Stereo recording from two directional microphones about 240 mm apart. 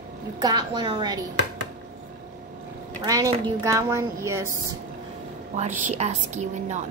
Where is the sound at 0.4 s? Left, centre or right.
Centre.